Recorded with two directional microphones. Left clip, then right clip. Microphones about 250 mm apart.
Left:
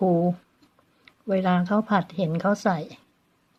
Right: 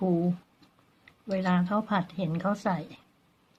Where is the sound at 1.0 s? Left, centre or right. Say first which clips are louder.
Left 6 dB; left.